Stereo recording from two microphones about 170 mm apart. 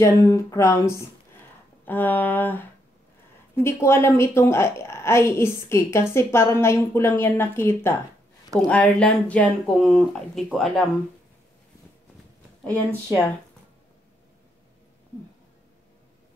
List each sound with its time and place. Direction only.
0.0 s a woman's voice: 15° left (ahead or behind); by 10.9 s centre (ahead or behind)